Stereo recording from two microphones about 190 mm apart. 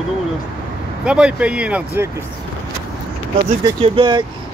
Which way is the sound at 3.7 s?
30° right (ahead or behind).